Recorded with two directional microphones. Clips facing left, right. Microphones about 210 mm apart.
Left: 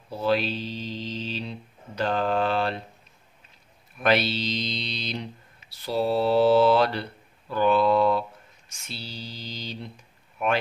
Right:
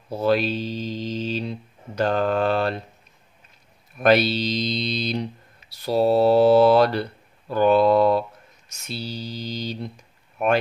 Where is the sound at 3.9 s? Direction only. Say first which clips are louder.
Right 5 dB; 45° right (ahead or behind).